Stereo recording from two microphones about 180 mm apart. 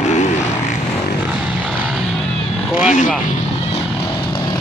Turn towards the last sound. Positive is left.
turn(degrees=45)  # may be behind; listen again after turning